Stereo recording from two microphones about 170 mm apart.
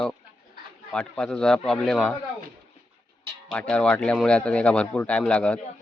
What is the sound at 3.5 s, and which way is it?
A man's voice, 5° left (ahead or behind).